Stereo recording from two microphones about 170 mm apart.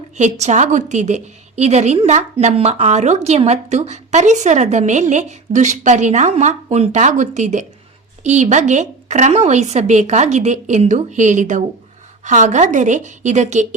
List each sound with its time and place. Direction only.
0.2 s a woman's voice: 45° right (ahead or behind)